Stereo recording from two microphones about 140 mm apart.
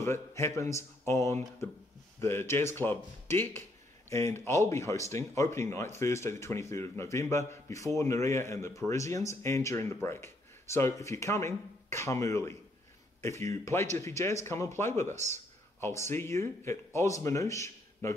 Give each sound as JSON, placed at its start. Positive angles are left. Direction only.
{"t": 0.0, "sound": "speech", "side_deg": 20}